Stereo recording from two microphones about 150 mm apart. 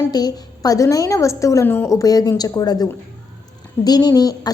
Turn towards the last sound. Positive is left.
turn(degrees=25)  # may be behind; listen again after turning